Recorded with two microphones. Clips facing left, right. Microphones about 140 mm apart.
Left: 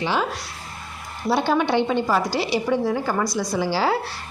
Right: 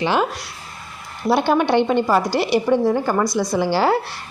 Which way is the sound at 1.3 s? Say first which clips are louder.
Right 3 dB; 60° right (ahead or behind).